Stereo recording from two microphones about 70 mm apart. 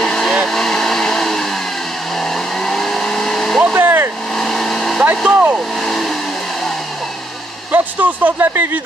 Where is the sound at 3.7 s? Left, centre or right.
Right.